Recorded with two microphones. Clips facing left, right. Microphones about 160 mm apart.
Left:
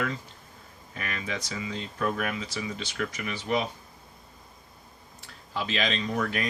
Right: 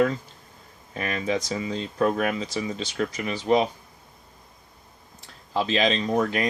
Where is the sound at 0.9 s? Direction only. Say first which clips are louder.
Right 8 dB; 30° right (ahead or behind).